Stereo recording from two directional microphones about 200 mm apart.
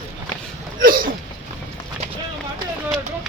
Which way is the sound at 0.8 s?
45° right (ahead or behind).